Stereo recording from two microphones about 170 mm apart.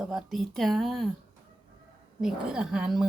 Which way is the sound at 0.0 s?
Centre (ahead or behind).